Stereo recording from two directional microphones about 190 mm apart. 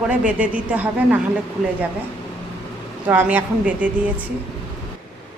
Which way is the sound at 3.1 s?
10° right (ahead or behind).